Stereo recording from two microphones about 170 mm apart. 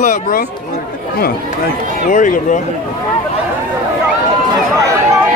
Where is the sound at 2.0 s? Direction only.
50° left (ahead or behind).